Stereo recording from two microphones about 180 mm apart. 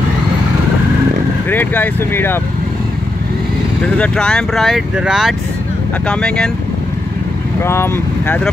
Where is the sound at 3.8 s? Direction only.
5° left (ahead or behind).